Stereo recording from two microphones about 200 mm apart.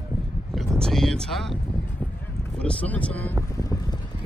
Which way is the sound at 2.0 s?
Centre (ahead or behind).